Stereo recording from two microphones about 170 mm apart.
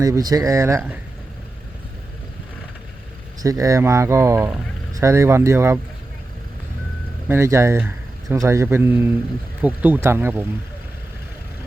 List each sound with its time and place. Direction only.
0.0 s speech: 20° right (ahead or behind)
3.4 s speech: 20° right (ahead or behind)
7.3 s speech: 15° right (ahead or behind)